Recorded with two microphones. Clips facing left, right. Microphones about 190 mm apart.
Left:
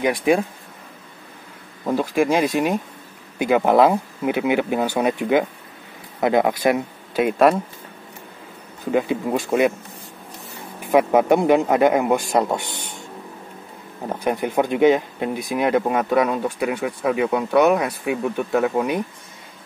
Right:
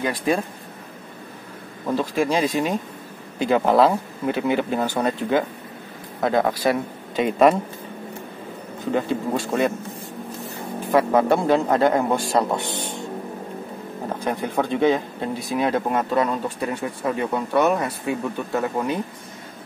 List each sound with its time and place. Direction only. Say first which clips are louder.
0.0 s speech: left 4 dB; 10° left (ahead or behind)
1.9 s speech: left 3 dB; 10° left (ahead or behind)
8.9 s speech: left 3 dB; 10° left (ahead or behind)
10.9 s speech: left 2 dB; 15° left (ahead or behind)
14.2 s speech: left 4 dB; 15° left (ahead or behind)